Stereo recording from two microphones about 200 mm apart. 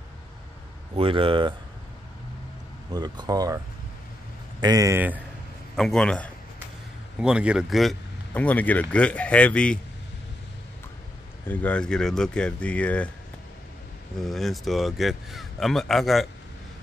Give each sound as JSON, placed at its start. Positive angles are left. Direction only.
{"t": 0.9, "sound": "speech", "side_deg": -25}
{"t": 2.9, "sound": "speech", "side_deg": -20}
{"t": 5.8, "sound": "speech", "side_deg": 5}
{"t": 7.2, "sound": "speech", "side_deg": -5}
{"t": 11.4, "sound": "speech", "side_deg": 10}
{"t": 14.2, "sound": "speech", "side_deg": 0}